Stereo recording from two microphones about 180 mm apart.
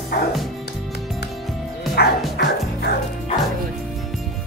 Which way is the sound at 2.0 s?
65° left (ahead or behind).